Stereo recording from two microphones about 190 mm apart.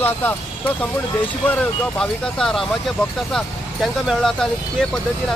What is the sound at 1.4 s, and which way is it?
Speech, 5° left (ahead or behind).